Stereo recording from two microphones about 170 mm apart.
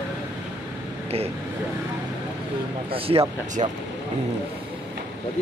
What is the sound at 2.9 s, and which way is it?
Speech, 35° right (ahead or behind).